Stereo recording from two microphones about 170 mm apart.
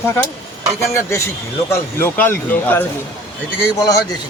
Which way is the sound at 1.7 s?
15° left (ahead or behind).